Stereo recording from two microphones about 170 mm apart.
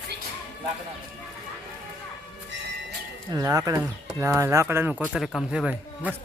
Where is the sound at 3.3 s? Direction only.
20° right (ahead or behind).